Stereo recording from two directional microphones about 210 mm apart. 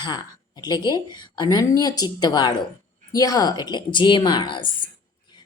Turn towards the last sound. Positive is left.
turn(degrees=25)  # may be behind; listen again after turning